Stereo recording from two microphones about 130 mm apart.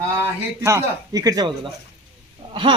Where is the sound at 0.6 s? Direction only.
25° right (ahead or behind).